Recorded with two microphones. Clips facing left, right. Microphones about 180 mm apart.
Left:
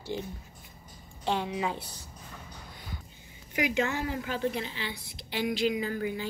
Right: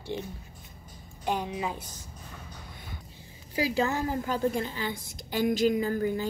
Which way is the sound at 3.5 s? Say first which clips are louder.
Right 1 dB; 35° right (ahead or behind).